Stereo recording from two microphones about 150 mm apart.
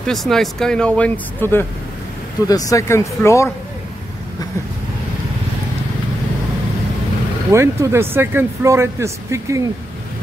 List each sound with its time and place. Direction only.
0.0 s speech: centre (ahead or behind)
7.5 s a man's voice: 20° right (ahead or behind)